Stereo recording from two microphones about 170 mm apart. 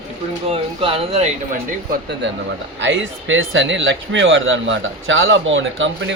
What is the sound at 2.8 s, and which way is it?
Speech, 90° right.